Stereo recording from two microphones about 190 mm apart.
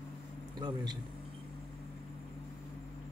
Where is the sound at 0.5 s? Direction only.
20° right (ahead or behind).